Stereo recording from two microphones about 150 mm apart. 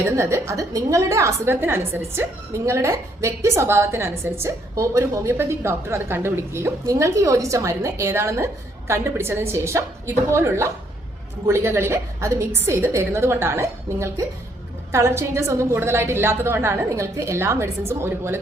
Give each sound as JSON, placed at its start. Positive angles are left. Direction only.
{"t": 0.2, "sound": "a woman's voice", "side_deg": -20}